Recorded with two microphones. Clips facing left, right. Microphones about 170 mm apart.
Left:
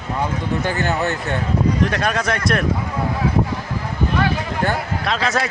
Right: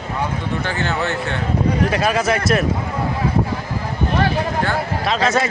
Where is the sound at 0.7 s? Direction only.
40° left (ahead or behind).